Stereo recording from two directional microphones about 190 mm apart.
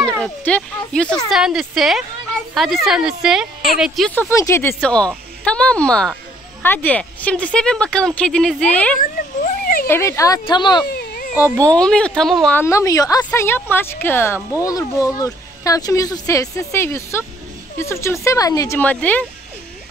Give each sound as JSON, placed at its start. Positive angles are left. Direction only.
{"t": 0.2, "sound": "speech", "side_deg": 5}
{"t": 8.9, "sound": "a sound", "side_deg": 50}
{"t": 9.8, "sound": "speech", "side_deg": 15}
{"t": 10.9, "sound": "baby cry", "side_deg": 50}
{"t": 11.3, "sound": "speech", "side_deg": -10}
{"t": 11.6, "sound": "speech", "side_deg": 5}